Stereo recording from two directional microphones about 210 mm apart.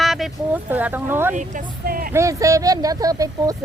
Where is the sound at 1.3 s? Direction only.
35° right (ahead or behind).